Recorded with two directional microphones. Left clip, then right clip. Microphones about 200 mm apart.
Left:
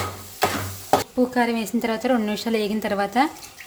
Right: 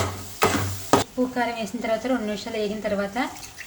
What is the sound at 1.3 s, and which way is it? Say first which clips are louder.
A woman's voice: left 4 dB; 50° left (ahead or behind).